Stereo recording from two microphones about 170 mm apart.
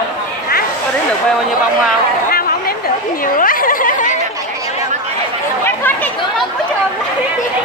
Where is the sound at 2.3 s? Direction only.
60° left (ahead or behind).